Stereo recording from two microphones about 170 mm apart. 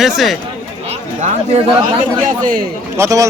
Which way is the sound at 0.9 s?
45° right (ahead or behind).